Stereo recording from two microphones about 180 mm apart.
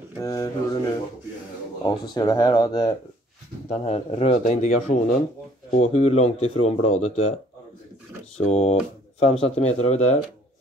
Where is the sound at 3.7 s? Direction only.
35° left (ahead or behind).